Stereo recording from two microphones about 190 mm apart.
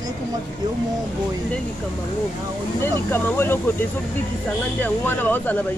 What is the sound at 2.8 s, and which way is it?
Speech, 10° left (ahead or behind).